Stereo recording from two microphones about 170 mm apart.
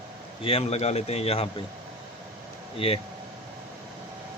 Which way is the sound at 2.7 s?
35° left (ahead or behind).